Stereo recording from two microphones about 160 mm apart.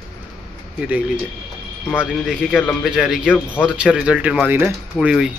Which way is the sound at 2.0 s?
5° right (ahead or behind).